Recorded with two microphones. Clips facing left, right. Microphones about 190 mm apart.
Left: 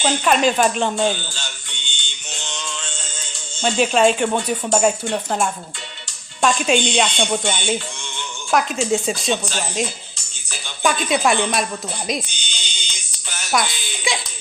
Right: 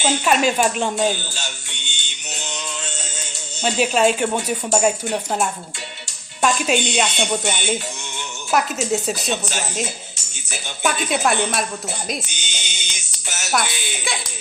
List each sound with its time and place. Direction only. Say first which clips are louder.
0.0 s speech: left 1 dB; 10° right (ahead or behind)
3.6 s speech: left 2 dB; 5° right (ahead or behind)
10.8 s speech: left 2 dB; 5° right (ahead or behind)
12.0 s music: left 3 dB; 5° right (ahead or behind)
13.2 s music: right 3 dB; 25° right (ahead or behind)